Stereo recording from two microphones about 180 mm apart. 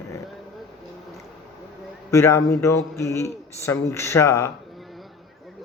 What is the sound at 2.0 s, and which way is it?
Speech, 15° left (ahead or behind).